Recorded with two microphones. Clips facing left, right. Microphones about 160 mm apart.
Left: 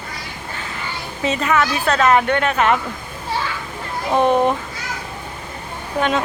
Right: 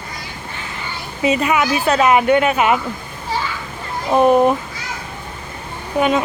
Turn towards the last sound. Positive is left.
turn(degrees=-5)  # may be behind; listen again after turning